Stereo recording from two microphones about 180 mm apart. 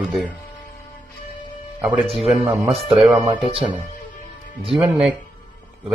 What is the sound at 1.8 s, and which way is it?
Speech, 10° right (ahead or behind).